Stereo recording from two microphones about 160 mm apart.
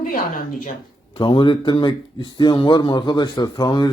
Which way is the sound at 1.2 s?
30° left (ahead or behind).